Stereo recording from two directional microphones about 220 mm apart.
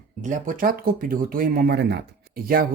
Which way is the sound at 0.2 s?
35° right (ahead or behind).